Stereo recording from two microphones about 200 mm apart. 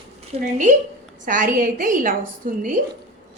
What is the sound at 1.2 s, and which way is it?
Speech, 40° right (ahead or behind).